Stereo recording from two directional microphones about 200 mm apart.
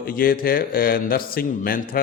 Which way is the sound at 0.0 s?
45° left (ahead or behind).